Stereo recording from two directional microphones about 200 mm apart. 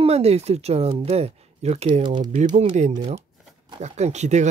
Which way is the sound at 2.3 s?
35° right (ahead or behind).